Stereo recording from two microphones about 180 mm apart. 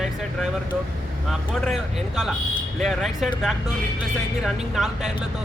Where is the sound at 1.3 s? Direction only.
Centre (ahead or behind).